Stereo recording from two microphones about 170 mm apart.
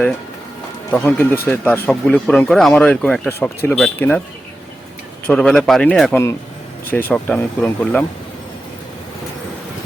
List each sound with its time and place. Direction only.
0.9 s speech: 10° left (ahead or behind)
5.2 s speech: 5° left (ahead or behind)